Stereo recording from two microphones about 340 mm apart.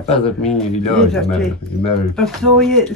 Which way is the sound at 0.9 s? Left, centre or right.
Centre.